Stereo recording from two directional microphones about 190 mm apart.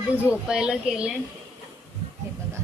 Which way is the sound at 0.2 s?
5° right (ahead or behind).